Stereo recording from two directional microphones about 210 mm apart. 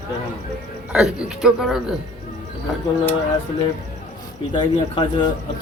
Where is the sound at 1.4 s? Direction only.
Centre (ahead or behind).